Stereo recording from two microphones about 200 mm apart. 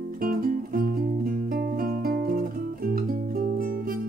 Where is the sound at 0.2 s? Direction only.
45° right (ahead or behind).